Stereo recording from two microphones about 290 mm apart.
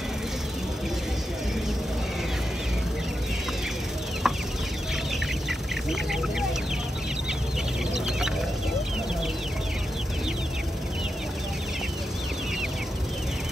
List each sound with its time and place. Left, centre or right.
4.2 s chicken: centre